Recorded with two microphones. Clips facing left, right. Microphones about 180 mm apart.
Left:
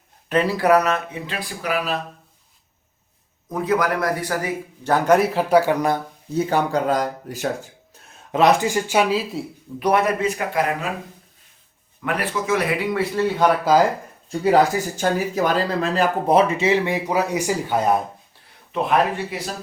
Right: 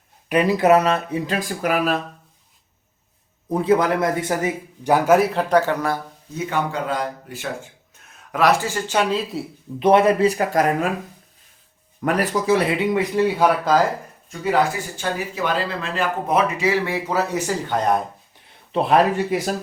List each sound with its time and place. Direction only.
0.3 s speech: 15° right (ahead or behind); by 2.0 s 50° right (ahead or behind)
3.5 s speech: 30° right (ahead or behind); by 6.0 s 15° left (ahead or behind)
6.3 s speech: 35° left (ahead or behind)
8.3 s speech: 20° left (ahead or behind)
9.8 s speech: 25° right (ahead or behind); by 10.8 s 40° right (ahead or behind)
11.9 s a man's voice: 40° right (ahead or behind); by 13.6 s 10° right (ahead or behind)
14.3 s speech: 35° left (ahead or behind); by 18.0 s 5° left (ahead or behind)
18.7 s speech: 35° right (ahead or behind)